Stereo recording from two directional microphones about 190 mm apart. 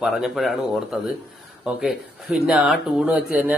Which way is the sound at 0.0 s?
Centre (ahead or behind).